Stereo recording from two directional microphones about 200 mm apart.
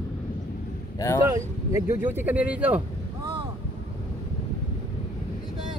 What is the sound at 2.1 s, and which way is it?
Speech, 10° right (ahead or behind).